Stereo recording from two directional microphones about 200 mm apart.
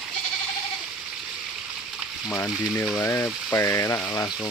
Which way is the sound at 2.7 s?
5° left (ahead or behind).